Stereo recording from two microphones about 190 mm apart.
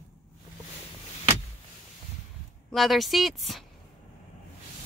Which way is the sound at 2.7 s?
Centre (ahead or behind).